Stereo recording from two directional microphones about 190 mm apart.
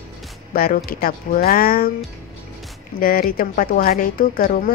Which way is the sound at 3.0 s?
50° left (ahead or behind).